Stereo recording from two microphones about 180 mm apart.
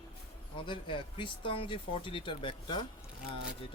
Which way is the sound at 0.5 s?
25° left (ahead or behind).